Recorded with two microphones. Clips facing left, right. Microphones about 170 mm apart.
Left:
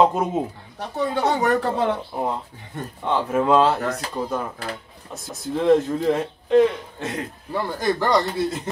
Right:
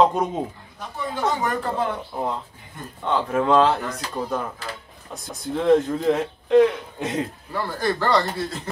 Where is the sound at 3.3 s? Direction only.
5° left (ahead or behind).